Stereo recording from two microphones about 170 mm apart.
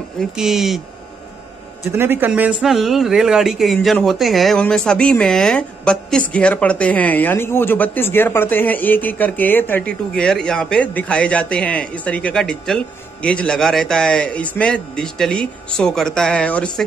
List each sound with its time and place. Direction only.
0.2 s speech: centre (ahead or behind)
1.9 s speech: 15° right (ahead or behind); by 16.8 s 5° left (ahead or behind)